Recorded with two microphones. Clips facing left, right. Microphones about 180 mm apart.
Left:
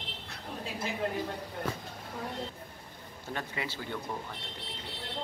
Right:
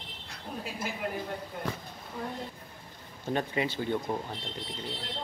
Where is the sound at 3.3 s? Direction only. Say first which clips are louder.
Right 7 dB; 20° right (ahead or behind).